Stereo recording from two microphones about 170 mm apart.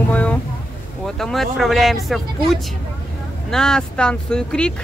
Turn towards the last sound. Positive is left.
turn(degrees=5)  # may be behind; listen again after turning